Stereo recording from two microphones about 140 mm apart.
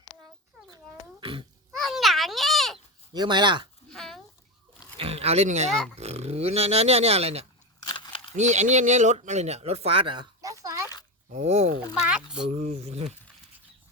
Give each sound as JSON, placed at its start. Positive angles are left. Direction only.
{"t": 1.2, "sound": "babbling", "side_deg": -35}
{"t": 1.7, "sound": "a sound", "side_deg": 0}
{"t": 3.1, "sound": "speech", "side_deg": -30}
{"t": 3.8, "sound": "a sound", "side_deg": 5}
{"t": 4.9, "sound": "speech", "side_deg": -45}
{"t": 7.9, "sound": "a sound", "side_deg": 35}
{"t": 8.4, "sound": "speech", "side_deg": -55}
{"t": 10.4, "sound": "oink", "side_deg": -25}
{"t": 11.3, "sound": "speech", "side_deg": -55}
{"t": 12.0, "sound": "speech", "side_deg": -5}
{"t": 12.5, "sound": "speech", "side_deg": -50}